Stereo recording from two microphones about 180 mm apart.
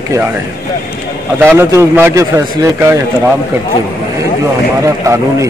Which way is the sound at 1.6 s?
15° right (ahead or behind).